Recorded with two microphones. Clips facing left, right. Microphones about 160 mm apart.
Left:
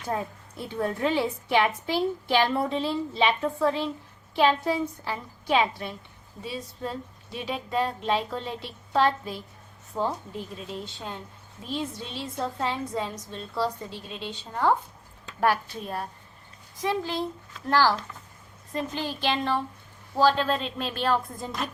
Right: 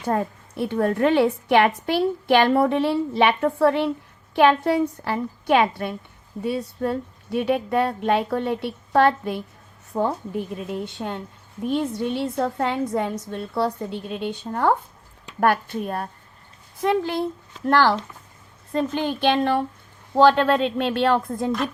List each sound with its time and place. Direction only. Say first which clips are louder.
0.0 s a woman's voice: right 7 dB; 60° right (ahead or behind)
18.9 s a woman's voice: right 7 dB; 60° right (ahead or behind)